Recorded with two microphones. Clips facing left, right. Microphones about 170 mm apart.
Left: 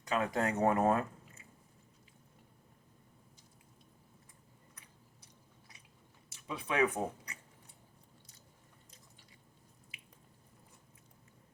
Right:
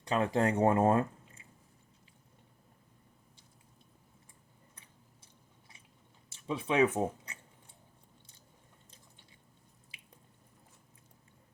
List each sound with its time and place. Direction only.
0.0 s speech: 30° right (ahead or behind)
5.2 s chewing: 25° right (ahead or behind)
6.3 s speech: 25° right (ahead or behind)